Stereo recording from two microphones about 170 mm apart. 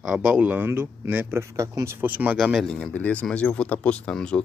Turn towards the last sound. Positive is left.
turn(degrees=5)  # may be behind; listen again after turning